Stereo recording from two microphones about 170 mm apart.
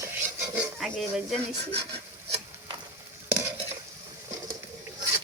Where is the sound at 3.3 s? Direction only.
15° right (ahead or behind).